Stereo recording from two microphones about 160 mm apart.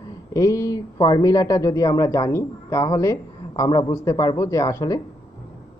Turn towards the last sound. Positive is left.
turn(degrees=20)  # may be behind; listen again after turning